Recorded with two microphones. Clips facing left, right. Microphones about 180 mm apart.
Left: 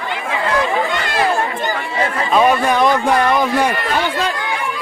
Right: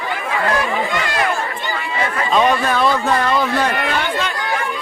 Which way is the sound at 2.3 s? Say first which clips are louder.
Left 2 dB; 10° left (ahead or behind).